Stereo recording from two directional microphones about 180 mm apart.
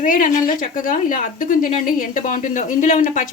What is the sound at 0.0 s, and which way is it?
A woman's voice, 50° left (ahead or behind).